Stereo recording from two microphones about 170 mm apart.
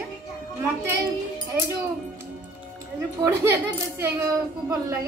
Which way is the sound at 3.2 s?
15° right (ahead or behind).